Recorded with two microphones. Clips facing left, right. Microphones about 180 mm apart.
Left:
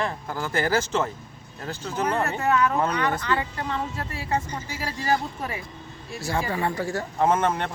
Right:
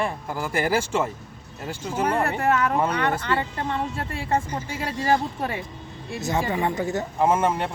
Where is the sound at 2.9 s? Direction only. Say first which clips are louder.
Right 1 dB; 30° right (ahead or behind).